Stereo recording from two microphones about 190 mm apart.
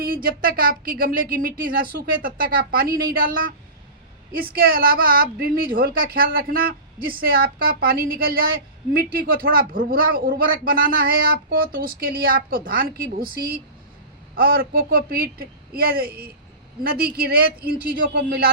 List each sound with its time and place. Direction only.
0.0 s a woman's voice: 50° right (ahead or behind)